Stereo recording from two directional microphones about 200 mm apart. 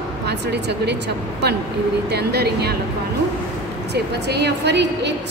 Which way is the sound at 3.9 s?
55° right (ahead or behind).